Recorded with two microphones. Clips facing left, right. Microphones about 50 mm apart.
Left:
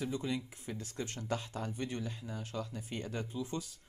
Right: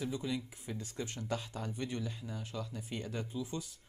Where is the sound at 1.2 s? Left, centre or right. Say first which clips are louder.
Left 2 dB; left.